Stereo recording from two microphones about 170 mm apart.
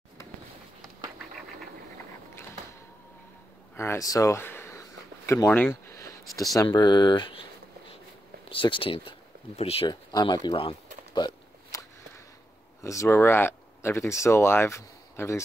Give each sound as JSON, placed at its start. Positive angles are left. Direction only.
{"t": 3.7, "sound": "a sound", "side_deg": 15}
{"t": 6.5, "sound": "speech", "side_deg": 20}
{"t": 8.5, "sound": "speech", "side_deg": 30}
{"t": 9.8, "sound": "speech", "side_deg": 25}
{"t": 11.1, "sound": "a sound", "side_deg": 25}
{"t": 12.8, "sound": "speech", "side_deg": 15}